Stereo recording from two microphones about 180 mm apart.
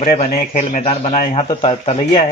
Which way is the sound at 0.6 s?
35° left (ahead or behind).